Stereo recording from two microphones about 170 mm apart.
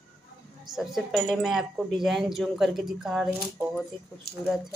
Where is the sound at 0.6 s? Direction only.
Centre (ahead or behind).